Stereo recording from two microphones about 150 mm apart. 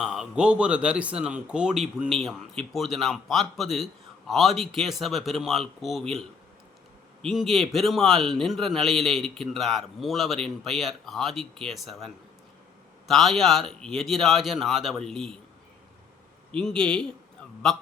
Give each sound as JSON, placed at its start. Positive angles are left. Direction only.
{"t": 0.0, "sound": "a man's voice", "side_deg": -5}
{"t": 16.5, "sound": "a man's voice", "side_deg": 5}